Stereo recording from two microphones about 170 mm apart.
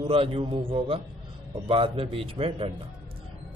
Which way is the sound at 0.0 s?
35° right (ahead or behind).